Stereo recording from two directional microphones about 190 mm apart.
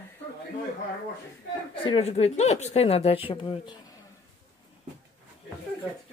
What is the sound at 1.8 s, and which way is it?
A woman's voice, 30° left (ahead or behind).